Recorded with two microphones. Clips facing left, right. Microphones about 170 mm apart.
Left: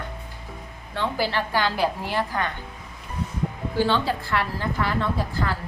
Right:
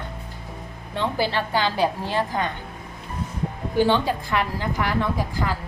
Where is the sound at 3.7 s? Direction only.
15° right (ahead or behind).